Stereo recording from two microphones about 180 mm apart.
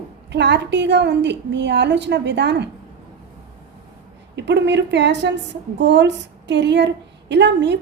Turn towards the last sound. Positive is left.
turn(degrees=-75)  # may be behind; listen again after turning